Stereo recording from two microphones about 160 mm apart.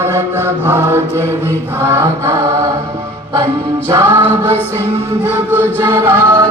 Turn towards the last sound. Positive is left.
turn(degrees=-15)  # may be behind; listen again after turning